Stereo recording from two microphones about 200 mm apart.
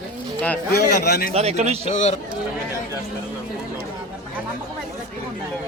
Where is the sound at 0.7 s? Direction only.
50° left (ahead or behind).